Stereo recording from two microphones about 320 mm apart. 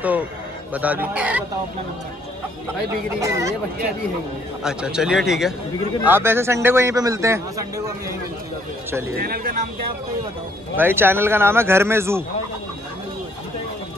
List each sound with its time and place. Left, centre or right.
0.7 s a man's voice: centre
3.2 s a man's voice: centre
4.6 s a man's voice: centre
9.2 s speech: right
10.8 s a man's voice: centre